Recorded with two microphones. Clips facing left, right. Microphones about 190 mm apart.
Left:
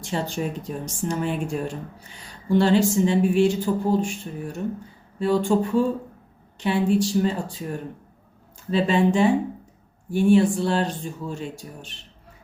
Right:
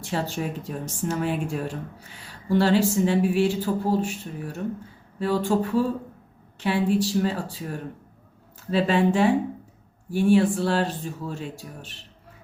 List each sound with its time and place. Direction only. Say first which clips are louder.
0.3 s speech: left 2 dB; 5° right (ahead or behind)
8.7 s speech: left 1 dB; 5° right (ahead or behind)